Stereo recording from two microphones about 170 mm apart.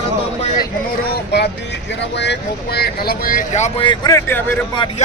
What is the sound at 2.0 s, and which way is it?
Speech, 90° left.